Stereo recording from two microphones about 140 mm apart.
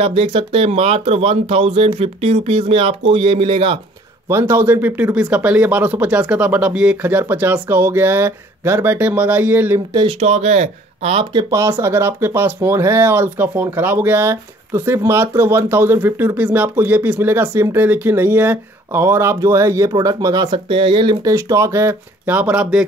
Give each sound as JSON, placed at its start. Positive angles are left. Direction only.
{"t": 0.0, "sound": "speech", "side_deg": -40}
{"t": 4.3, "sound": "speech", "side_deg": -15}
{"t": 10.2, "sound": "speech", "side_deg": -50}
{"t": 11.3, "sound": "speech", "side_deg": -20}
{"t": 20.7, "sound": "speech", "side_deg": -40}